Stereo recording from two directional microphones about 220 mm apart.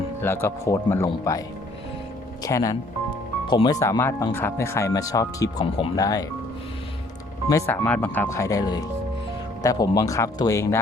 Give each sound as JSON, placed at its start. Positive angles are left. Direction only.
{"t": 0.2, "sound": "speech", "side_deg": 10}
{"t": 7.5, "sound": "speech", "side_deg": 10}